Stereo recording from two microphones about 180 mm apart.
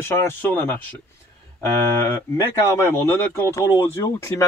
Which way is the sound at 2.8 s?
15° left (ahead or behind).